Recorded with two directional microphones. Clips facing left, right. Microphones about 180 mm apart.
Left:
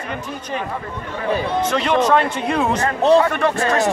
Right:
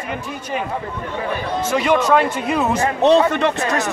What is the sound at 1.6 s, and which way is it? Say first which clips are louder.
A man's voice: right 3 dB; 5° right (ahead or behind).